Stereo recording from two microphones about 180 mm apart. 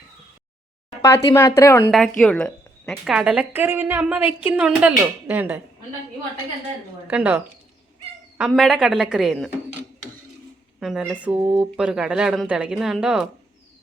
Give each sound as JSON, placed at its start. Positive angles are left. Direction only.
{"t": 1.0, "sound": "speech", "side_deg": 15}
{"t": 1.9, "sound": "a woman's voice", "side_deg": 0}
{"t": 7.1, "sound": "a woman's voice", "side_deg": -10}
{"t": 10.8, "sound": "a woman's voice", "side_deg": 0}
{"t": 11.4, "sound": "speech", "side_deg": -20}
{"t": 11.8, "sound": "a woman's voice", "side_deg": -5}